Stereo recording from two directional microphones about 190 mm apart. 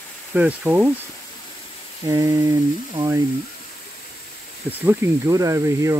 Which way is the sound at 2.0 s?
15° right (ahead or behind).